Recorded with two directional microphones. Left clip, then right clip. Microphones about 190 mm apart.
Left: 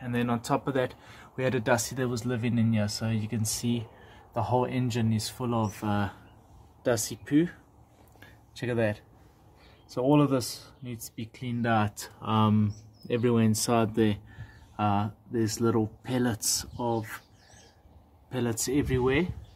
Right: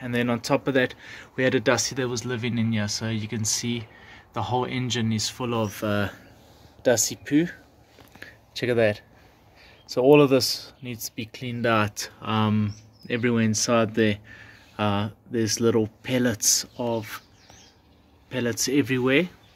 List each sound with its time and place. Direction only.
0.0 s speech: 5° right (ahead or behind); by 5.3 s 25° right (ahead or behind)
5.4 s speech: 5° right (ahead or behind)
8.2 s a sound: 20° right (ahead or behind)
9.9 s speech: 25° right (ahead or behind)
11.9 s speech: 5° right (ahead or behind)
18.3 s speech: 10° left (ahead or behind)
18.7 s speech: 5° right (ahead or behind)